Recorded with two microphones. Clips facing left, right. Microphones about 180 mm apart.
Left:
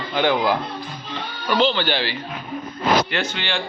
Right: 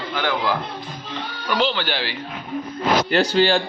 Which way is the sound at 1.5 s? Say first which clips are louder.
Left 3 dB; 10° right (ahead or behind).